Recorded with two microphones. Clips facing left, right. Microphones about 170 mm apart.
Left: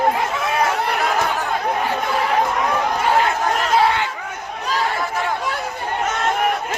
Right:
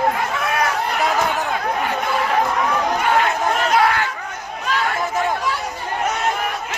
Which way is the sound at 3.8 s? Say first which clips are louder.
Left 1 dB; 25° left (ahead or behind).